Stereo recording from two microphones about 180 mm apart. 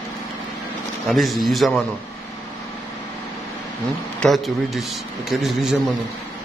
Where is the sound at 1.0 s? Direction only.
Centre (ahead or behind).